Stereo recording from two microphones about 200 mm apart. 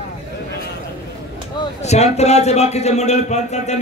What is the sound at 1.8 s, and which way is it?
A man's voice, 35° left (ahead or behind).